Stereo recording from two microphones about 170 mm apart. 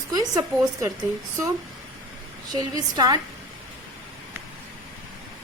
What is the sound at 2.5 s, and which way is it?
Speech, 25° right (ahead or behind).